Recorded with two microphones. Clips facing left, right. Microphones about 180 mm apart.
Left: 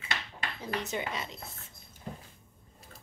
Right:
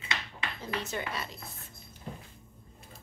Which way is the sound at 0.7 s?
15° left (ahead or behind).